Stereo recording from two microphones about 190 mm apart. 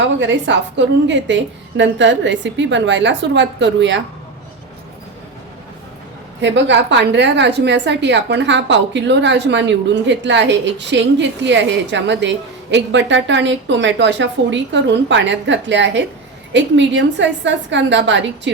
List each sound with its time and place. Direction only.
0.0 s a woman's voice: 70° right (ahead or behind)
6.4 s a woman's voice: 70° right (ahead or behind)